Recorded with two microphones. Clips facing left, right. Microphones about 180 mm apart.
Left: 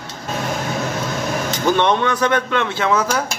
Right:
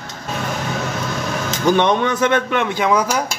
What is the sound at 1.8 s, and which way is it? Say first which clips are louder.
A man's voice: right 1 dB; 15° right (ahead or behind).